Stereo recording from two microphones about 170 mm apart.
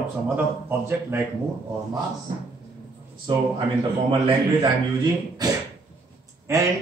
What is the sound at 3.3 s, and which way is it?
Speech, 25° right (ahead or behind).